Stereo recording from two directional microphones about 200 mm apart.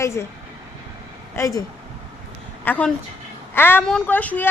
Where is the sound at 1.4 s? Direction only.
15° left (ahead or behind).